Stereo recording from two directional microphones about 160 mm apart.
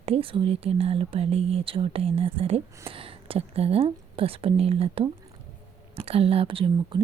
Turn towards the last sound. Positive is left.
turn(degrees=-35)  # may be behind; listen again after turning